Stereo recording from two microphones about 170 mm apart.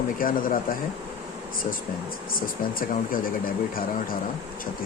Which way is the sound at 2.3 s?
55° left (ahead or behind).